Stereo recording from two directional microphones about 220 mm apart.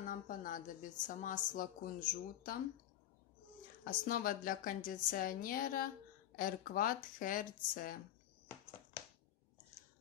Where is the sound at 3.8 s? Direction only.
40° left (ahead or behind).